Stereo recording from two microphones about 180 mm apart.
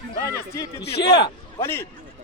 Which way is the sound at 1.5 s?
15° left (ahead or behind).